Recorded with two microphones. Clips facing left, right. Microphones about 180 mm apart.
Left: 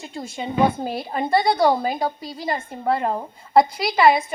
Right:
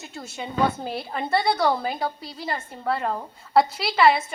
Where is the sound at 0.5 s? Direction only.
15° left (ahead or behind).